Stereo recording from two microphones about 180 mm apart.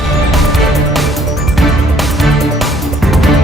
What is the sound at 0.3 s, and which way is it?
Music, centre (ahead or behind).